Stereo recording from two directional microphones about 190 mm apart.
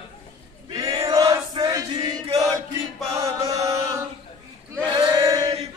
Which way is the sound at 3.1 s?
15° right (ahead or behind).